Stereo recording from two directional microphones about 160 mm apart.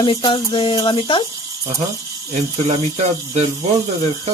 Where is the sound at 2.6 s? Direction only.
40° right (ahead or behind).